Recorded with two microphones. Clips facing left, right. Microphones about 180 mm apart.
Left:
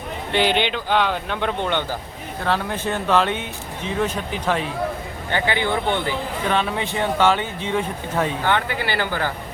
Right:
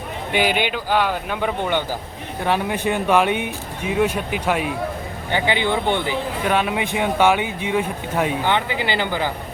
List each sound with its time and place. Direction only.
0.3 s speech: 10° right (ahead or behind)